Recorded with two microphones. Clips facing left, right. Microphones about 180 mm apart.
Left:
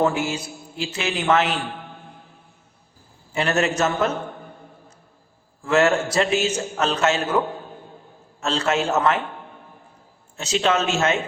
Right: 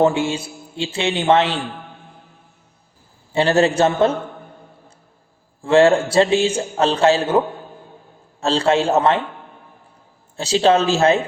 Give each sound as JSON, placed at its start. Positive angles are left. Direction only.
{"t": 0.0, "sound": "a man's voice", "side_deg": -25}
{"t": 3.3, "sound": "a man's voice", "side_deg": -30}
{"t": 5.6, "sound": "a man's voice", "side_deg": -30}
{"t": 10.3, "sound": "a man's voice", "side_deg": -30}